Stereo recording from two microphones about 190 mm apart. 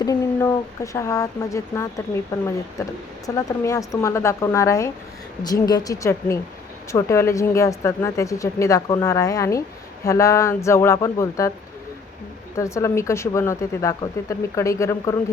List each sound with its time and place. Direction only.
0.0 s speech: 15° left (ahead or behind)
12.5 s speech: 15° left (ahead or behind)